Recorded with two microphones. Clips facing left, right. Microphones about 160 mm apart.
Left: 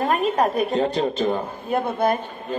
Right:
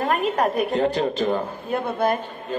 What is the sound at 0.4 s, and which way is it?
Speech, 20° left (ahead or behind).